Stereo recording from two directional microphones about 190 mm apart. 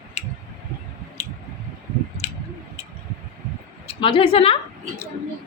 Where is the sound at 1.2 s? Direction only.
35° left (ahead or behind).